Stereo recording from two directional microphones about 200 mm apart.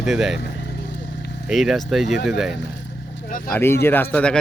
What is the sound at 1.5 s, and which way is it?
Speech, centre (ahead or behind).